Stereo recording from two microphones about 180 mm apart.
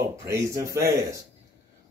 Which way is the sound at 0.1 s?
15° right (ahead or behind).